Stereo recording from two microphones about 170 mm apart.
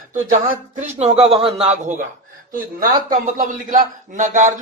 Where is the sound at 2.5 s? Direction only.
55° right (ahead or behind).